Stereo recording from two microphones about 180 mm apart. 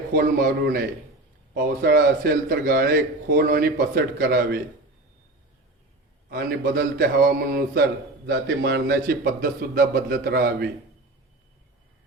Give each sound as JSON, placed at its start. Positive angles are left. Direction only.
{"t": 0.1, "sound": "a man's voice", "side_deg": -55}
{"t": 6.3, "sound": "a man's voice", "side_deg": -55}
{"t": 8.3, "sound": "a man's voice", "side_deg": -65}